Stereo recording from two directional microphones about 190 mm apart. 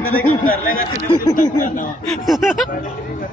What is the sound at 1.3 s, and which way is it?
Speech, 45° left (ahead or behind).